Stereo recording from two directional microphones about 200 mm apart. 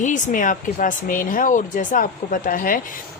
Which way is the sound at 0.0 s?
40° left (ahead or behind).